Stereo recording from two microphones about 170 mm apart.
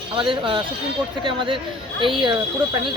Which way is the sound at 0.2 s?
30° right (ahead or behind).